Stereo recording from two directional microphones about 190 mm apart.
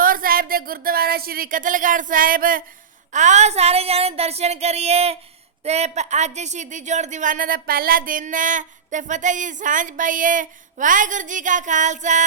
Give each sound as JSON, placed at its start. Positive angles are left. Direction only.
{"t": 0.0, "sound": "speech", "side_deg": -50}